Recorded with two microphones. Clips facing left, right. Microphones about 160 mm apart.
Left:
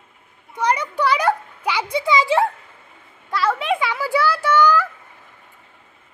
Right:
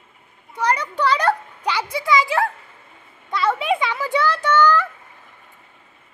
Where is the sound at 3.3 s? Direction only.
Centre (ahead or behind).